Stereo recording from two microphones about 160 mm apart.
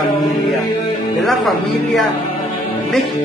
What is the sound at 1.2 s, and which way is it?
Speech, centre (ahead or behind).